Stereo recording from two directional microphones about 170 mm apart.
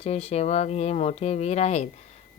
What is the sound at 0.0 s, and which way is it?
Speech, 35° left (ahead or behind).